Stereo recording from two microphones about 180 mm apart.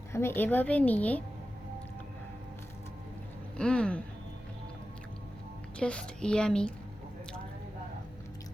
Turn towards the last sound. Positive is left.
turn(degrees=5)  # may be behind; listen again after turning